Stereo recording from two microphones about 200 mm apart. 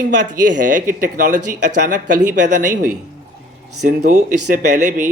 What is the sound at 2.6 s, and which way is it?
Speech, 40° right (ahead or behind).